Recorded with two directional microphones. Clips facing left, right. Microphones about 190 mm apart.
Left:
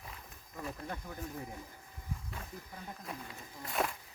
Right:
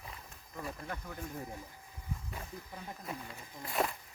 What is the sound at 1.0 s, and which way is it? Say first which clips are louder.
Speech: even; 15° left (ahead or behind).